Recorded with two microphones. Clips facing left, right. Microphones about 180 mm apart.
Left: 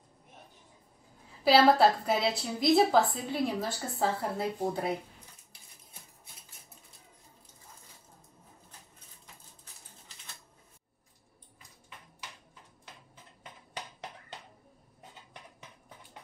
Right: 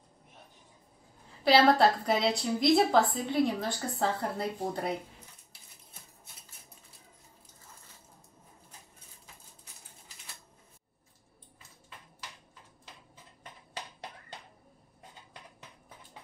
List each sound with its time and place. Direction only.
1.4 s a woman's voice: 5° left (ahead or behind)